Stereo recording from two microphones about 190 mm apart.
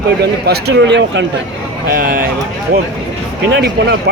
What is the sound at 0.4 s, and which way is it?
Speech, 60° right (ahead or behind).